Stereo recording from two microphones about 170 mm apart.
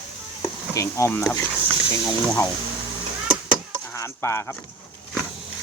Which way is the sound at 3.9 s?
15° left (ahead or behind).